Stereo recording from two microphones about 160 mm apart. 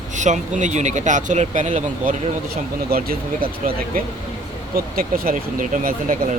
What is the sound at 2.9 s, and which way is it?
Speech, 65° right (ahead or behind).